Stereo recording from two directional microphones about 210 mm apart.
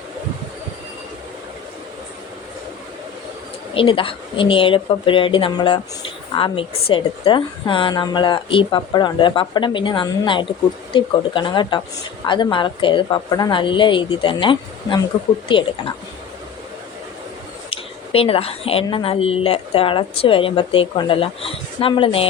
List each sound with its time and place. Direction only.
3.8 s speech: 25° left (ahead or behind)
17.7 s speech: 25° left (ahead or behind)